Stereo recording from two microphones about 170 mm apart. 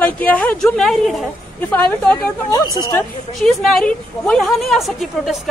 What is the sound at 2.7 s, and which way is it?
Speech, 20° left (ahead or behind).